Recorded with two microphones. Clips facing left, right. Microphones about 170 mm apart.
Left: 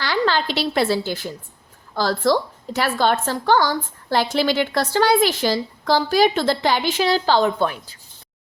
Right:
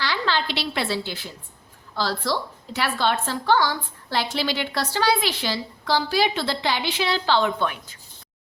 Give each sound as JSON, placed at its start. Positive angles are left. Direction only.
{"t": 0.0, "sound": "a woman's voice", "side_deg": 45}